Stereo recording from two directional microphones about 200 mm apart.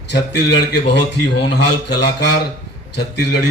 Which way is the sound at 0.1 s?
60° left (ahead or behind).